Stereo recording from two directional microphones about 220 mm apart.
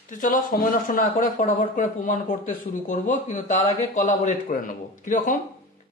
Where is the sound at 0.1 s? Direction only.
35° left (ahead or behind).